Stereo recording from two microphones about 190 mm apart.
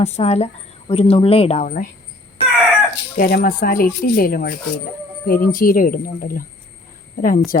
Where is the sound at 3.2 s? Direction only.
55° left (ahead or behind).